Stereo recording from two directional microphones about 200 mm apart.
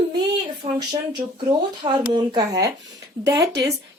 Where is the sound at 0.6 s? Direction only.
25° right (ahead or behind).